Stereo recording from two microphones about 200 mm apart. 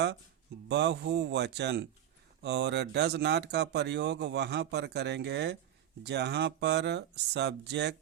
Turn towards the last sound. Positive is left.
turn(degrees=-60)  # may be behind; listen again after turning